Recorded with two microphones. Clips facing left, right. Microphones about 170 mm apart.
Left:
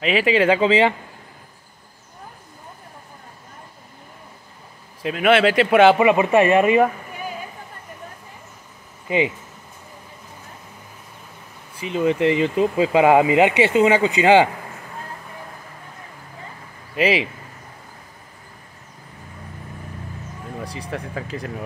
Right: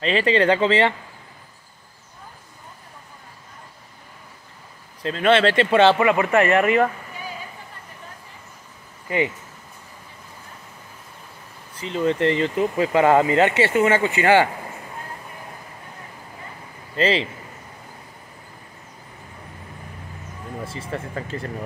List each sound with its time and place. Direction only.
0.0 s speech: 5° left (ahead or behind)
5.0 s speech: 10° left (ahead or behind)
9.0 s speech: 20° left (ahead or behind)
11.7 s speech: 15° left (ahead or behind)
16.9 s speech: 10° left (ahead or behind)
20.6 s speech: centre (ahead or behind)